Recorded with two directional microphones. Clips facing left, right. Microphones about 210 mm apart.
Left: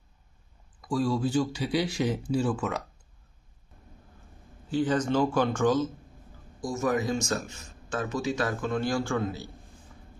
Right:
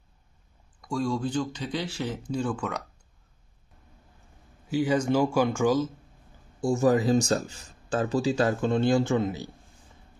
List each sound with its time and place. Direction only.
0.7 s speech: 5° left (ahead or behind)
4.6 s speech: 10° right (ahead or behind)
6.6 s speech: 30° right (ahead or behind)